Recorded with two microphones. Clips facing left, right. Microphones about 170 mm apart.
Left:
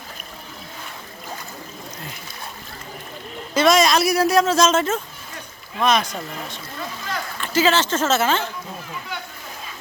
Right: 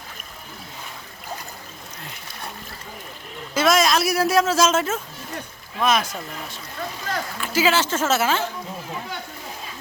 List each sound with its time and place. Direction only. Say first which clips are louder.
3.5 s a man's voice: left 3 dB; 5° right (ahead or behind)